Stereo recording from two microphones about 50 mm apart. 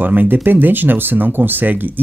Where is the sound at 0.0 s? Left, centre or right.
Right.